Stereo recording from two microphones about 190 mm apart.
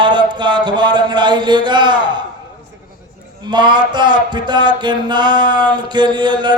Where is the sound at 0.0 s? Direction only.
25° right (ahead or behind).